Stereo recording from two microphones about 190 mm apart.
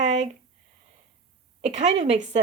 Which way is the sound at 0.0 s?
35° right (ahead or behind).